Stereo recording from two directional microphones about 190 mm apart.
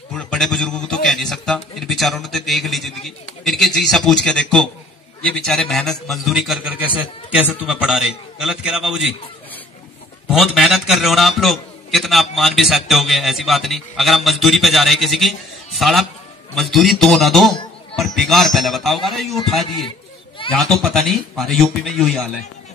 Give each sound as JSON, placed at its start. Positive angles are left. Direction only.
{"t": 0.1, "sound": "a man's voice", "side_deg": 0}
{"t": 10.2, "sound": "a man's voice", "side_deg": 0}